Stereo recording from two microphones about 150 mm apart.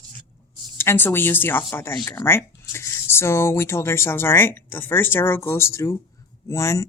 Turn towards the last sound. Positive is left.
turn(degrees=20)  # may be behind; listen again after turning